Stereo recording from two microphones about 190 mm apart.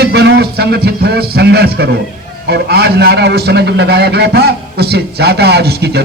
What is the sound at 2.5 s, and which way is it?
A man's voice, 55° right (ahead or behind).